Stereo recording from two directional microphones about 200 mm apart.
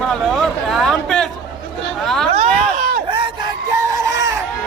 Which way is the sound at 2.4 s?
45° right (ahead or behind).